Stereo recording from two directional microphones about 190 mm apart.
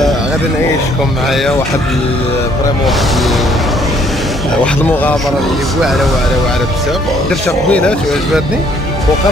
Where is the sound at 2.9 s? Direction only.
Centre (ahead or behind).